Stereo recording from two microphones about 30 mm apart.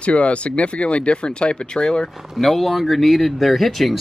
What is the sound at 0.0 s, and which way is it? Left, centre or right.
Speech, left.